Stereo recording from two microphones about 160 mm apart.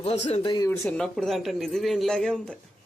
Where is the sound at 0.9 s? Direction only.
5° left (ahead or behind).